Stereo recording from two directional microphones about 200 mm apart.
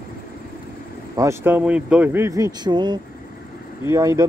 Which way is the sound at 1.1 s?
10° right (ahead or behind).